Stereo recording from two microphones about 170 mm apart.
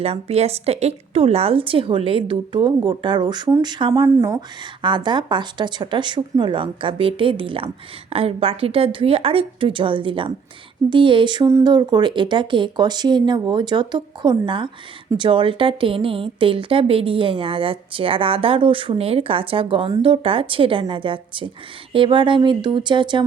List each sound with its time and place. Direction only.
0.0 s speech: 35° right (ahead or behind)
4.0 s speech: 15° right (ahead or behind)
4.3 s speech: 25° right (ahead or behind)